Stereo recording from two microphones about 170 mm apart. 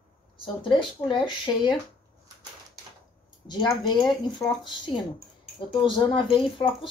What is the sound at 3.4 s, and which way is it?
Speech, 25° left (ahead or behind).